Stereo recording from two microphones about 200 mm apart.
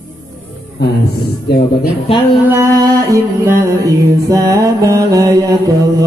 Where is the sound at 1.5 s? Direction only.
55° left (ahead or behind).